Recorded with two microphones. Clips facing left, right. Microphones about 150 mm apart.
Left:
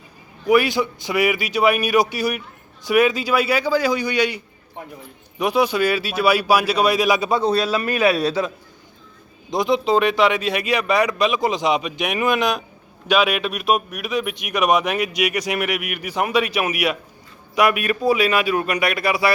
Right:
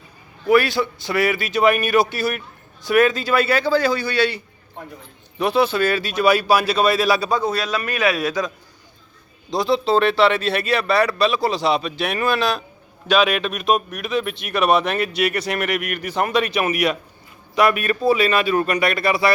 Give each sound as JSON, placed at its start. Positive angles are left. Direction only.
{"t": 0.4, "sound": "speech", "side_deg": 15}
{"t": 5.4, "sound": "a man's voice", "side_deg": 10}